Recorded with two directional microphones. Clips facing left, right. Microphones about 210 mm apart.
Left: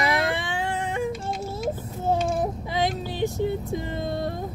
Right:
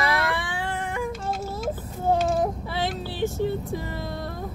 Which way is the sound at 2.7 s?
15° left (ahead or behind).